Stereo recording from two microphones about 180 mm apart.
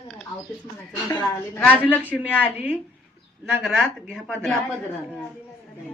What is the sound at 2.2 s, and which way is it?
Speech, 10° left (ahead or behind).